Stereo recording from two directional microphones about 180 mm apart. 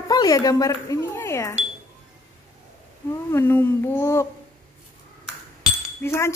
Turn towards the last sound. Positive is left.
turn(degrees=15)  # may be behind; listen again after turning